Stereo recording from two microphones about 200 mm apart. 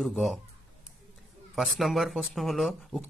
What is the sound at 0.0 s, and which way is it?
Speech, centre (ahead or behind).